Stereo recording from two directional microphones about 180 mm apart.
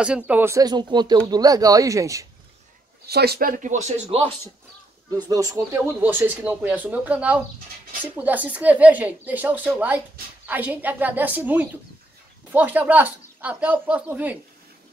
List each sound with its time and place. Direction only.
0.3 s speech: 15° right (ahead or behind)
3.1 s speech: 60° right (ahead or behind); by 4.3 s 35° right (ahead or behind)
5.1 s speech: 20° right (ahead or behind)